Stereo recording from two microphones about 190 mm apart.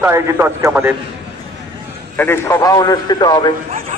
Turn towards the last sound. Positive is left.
turn(degrees=-40)  # may be behind; listen again after turning